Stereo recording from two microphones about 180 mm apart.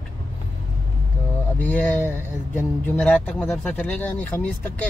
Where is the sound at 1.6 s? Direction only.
10° left (ahead or behind).